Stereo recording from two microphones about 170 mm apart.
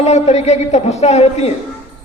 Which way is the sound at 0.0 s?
40° left (ahead or behind).